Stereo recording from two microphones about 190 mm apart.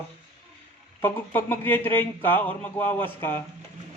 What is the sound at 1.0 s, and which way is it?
Speech, 10° left (ahead or behind).